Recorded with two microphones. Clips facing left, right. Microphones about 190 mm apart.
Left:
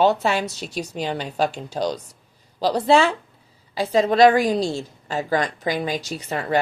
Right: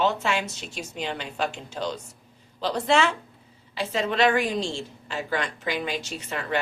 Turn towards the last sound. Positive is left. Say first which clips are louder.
# left 6 dB
turn(degrees=35)  # may be behind; listen again after turning